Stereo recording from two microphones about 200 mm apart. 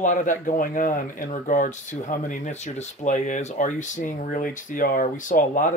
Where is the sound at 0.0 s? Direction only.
40° left (ahead or behind).